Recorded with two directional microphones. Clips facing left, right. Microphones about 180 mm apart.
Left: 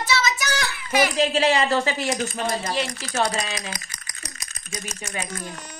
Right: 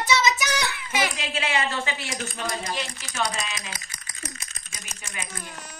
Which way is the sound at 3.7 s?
25° right (ahead or behind).